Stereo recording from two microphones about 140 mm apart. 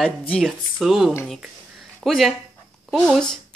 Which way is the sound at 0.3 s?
Centre (ahead or behind).